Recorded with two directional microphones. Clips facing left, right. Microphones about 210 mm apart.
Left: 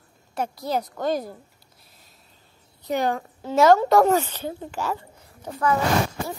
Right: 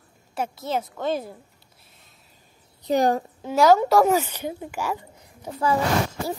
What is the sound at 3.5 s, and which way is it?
A child's voice, centre (ahead or behind).